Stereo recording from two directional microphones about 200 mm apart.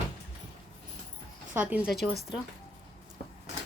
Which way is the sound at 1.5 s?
10° right (ahead or behind).